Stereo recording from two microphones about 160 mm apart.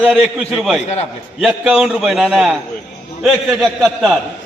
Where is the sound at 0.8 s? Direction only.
40° left (ahead or behind).